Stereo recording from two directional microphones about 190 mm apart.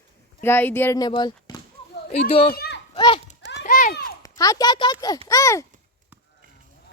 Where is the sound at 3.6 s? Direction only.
50° left (ahead or behind).